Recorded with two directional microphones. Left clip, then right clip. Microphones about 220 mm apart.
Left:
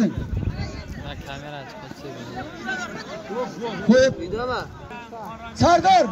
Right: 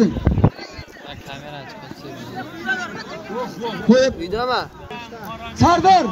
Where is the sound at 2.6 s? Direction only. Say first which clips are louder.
Right 6 dB; 55° left (ahead or behind).